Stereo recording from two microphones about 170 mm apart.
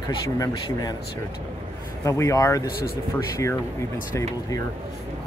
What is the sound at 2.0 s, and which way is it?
Speech, 20° left (ahead or behind).